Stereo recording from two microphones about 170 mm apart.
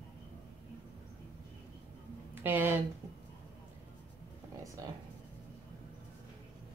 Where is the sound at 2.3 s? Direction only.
10° right (ahead or behind).